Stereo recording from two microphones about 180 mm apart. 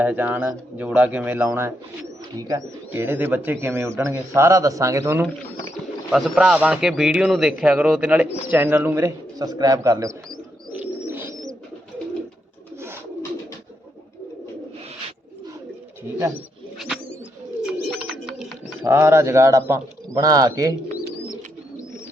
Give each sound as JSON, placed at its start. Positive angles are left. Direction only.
{"t": 0.0, "sound": "speech", "side_deg": -10}
{"t": 6.1, "sound": "a man's voice", "side_deg": 0}
{"t": 11.1, "sound": "bird", "side_deg": -10}
{"t": 16.7, "sound": "bird", "side_deg": 0}
{"t": 18.9, "sound": "speech", "side_deg": -15}